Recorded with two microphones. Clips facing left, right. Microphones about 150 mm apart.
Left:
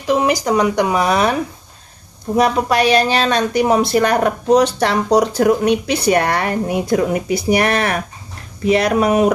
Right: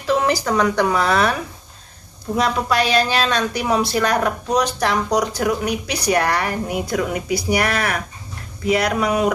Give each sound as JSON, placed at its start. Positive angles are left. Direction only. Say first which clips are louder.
{"t": 0.0, "sound": "speech", "louder": "left 3 dB", "side_deg": 15}
{"t": 2.3, "sound": "speech", "louder": "left 4 dB", "side_deg": 50}
{"t": 3.5, "sound": "speech", "louder": "left 5 dB", "side_deg": 20}